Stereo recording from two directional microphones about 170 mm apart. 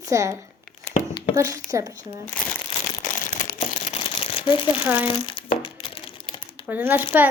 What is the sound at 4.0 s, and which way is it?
Shuffling cards, 30° left (ahead or behind).